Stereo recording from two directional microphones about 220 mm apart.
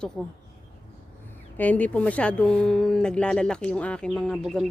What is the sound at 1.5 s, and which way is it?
Speech, 5° left (ahead or behind).